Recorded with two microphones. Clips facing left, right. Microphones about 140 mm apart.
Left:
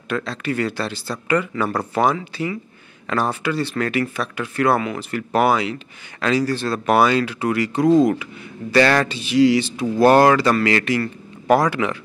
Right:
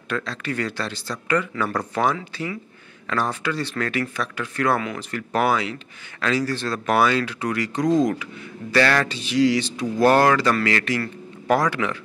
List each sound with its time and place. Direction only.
0.1 s speech: 10° left (ahead or behind)
8.7 s speech: 20° left (ahead or behind)